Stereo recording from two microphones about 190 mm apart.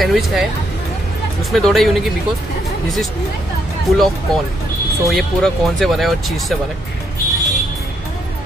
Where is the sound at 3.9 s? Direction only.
Centre (ahead or behind).